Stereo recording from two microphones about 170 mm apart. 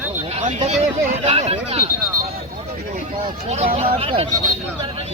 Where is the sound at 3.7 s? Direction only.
35° right (ahead or behind).